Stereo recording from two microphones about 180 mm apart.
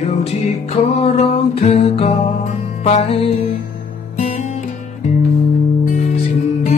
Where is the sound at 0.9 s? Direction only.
35° left (ahead or behind).